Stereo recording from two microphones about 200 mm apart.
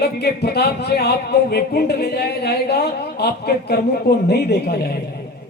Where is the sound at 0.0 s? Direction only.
50° left (ahead or behind).